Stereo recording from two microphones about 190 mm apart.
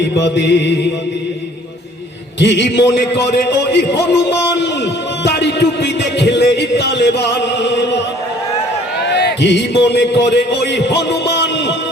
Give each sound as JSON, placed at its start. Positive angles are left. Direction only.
{"t": 0.2, "sound": "a man's voice", "side_deg": 65}
{"t": 2.4, "sound": "a man's voice", "side_deg": 65}
{"t": 5.2, "sound": "music", "side_deg": 60}
{"t": 9.0, "sound": "a man's voice", "side_deg": 65}